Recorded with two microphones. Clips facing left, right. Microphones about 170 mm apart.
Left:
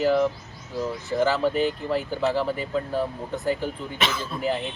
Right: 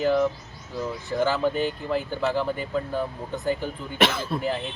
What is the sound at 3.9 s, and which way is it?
Speech, 60° right (ahead or behind).